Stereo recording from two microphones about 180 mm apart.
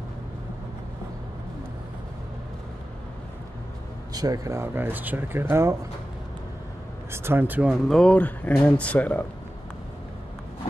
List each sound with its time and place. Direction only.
4.1 s speech: 20° right (ahead or behind)
7.1 s speech: 10° right (ahead or behind); by 9.2 s 5° left (ahead or behind)